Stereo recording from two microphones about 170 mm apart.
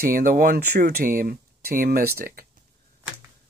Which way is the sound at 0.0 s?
55° right (ahead or behind).